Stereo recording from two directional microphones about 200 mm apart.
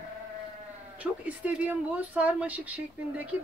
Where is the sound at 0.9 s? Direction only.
10° right (ahead or behind).